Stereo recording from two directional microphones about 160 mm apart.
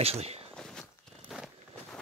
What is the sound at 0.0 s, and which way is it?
Speech, 40° right (ahead or behind).